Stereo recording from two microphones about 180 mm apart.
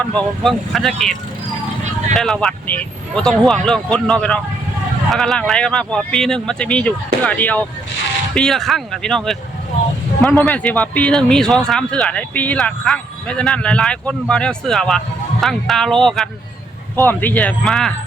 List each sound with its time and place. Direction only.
0.0 s speech: 5° left (ahead or behind)
2.1 s speech: centre (ahead or behind)